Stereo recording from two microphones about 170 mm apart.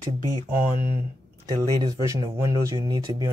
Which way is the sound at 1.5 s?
25° right (ahead or behind).